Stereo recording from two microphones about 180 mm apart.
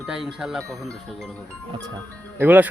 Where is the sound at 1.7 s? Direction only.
25° right (ahead or behind).